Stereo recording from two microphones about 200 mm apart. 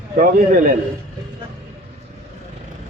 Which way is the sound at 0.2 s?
45° right (ahead or behind).